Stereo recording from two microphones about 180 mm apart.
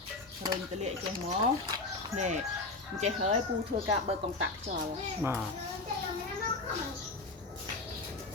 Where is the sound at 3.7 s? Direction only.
55° right (ahead or behind).